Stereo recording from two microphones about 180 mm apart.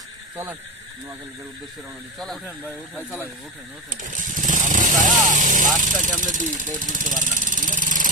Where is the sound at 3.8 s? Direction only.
45° right (ahead or behind).